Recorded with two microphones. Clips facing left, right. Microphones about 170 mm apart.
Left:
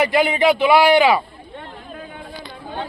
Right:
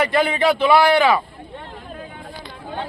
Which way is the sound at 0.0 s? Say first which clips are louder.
Left 2 dB; 15° left (ahead or behind).